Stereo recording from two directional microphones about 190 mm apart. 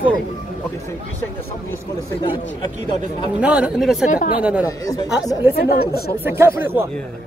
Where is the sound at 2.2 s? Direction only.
20° left (ahead or behind).